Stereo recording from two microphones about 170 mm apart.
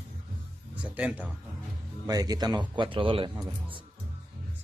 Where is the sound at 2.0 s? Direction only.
20° right (ahead or behind).